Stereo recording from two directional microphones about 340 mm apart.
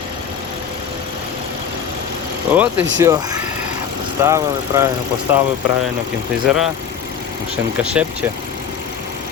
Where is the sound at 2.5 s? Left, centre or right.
Centre.